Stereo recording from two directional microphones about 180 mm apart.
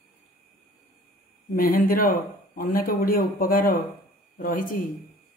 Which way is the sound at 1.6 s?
55° left (ahead or behind).